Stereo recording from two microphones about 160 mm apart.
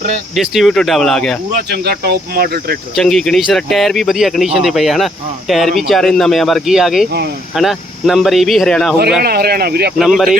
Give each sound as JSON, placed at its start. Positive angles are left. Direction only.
{"t": 0.3, "sound": "speech", "side_deg": 0}
{"t": 1.5, "sound": "speech", "side_deg": -85}
{"t": 2.9, "sound": "speech", "side_deg": 0}
{"t": 9.2, "sound": "speech", "side_deg": -75}
{"t": 10.0, "sound": "speech", "side_deg": 0}